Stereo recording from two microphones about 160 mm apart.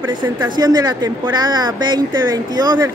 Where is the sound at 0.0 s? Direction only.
25° right (ahead or behind).